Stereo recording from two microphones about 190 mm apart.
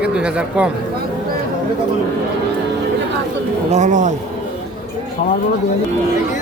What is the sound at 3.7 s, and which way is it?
Speech, 40° right (ahead or behind).